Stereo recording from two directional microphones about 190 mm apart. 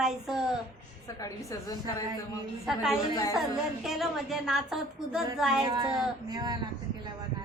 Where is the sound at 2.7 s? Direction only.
Centre (ahead or behind).